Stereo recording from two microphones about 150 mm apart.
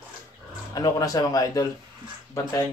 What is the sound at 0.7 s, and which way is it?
Speech, 25° left (ahead or behind).